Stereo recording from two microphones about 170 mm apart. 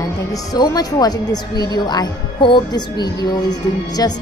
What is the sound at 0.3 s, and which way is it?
A woman's voice, 20° left (ahead or behind).